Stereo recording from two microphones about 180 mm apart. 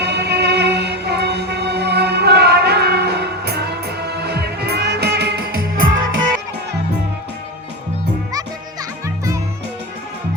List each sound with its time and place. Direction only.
0.0 s music: 70° right (ahead or behind); by 6.1 s 90° right
9.0 s music: 15° right (ahead or behind)